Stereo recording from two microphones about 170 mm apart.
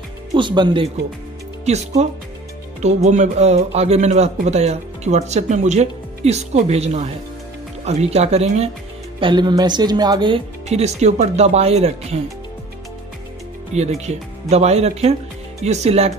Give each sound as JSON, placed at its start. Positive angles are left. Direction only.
{"t": 0.3, "sound": "speech", "side_deg": -25}
{"t": 1.7, "sound": "speech", "side_deg": -40}
{"t": 9.2, "sound": "speech", "side_deg": -25}
{"t": 13.7, "sound": "speech", "side_deg": -40}